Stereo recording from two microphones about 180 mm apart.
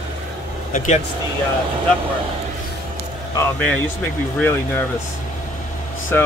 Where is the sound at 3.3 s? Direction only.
10° left (ahead or behind).